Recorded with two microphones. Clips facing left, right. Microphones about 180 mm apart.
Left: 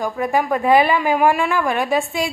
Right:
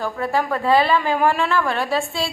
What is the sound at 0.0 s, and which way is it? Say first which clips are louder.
A woman's voice: left 2 dB; 15° left (ahead or behind).